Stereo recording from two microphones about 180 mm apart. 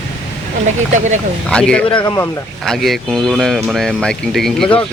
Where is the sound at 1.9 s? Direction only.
20° left (ahead or behind).